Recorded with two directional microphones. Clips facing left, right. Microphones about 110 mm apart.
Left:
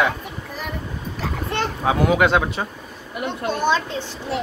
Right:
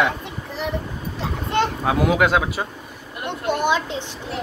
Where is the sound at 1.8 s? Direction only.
Centre (ahead or behind).